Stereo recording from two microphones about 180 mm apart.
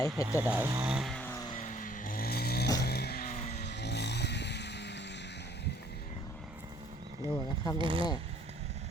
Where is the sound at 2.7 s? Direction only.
60° left (ahead or behind).